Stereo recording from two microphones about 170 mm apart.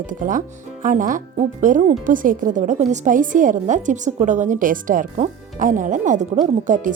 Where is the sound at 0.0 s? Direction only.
50° right (ahead or behind).